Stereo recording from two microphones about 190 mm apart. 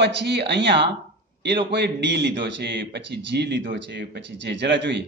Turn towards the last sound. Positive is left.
turn(degrees=-65)  # may be behind; listen again after turning